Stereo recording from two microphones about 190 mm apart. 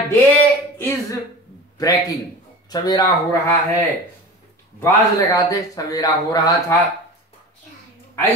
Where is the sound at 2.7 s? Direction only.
20° left (ahead or behind).